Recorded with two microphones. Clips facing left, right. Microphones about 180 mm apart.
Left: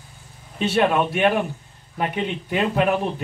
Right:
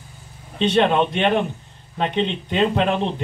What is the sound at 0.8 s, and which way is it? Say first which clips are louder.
A man's voice: even; 25° right (ahead or behind).